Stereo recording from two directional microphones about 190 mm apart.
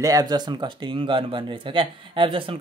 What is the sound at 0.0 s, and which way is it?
Speech, 20° right (ahead or behind).